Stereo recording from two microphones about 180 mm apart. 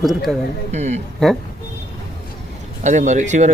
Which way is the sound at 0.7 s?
40° right (ahead or behind).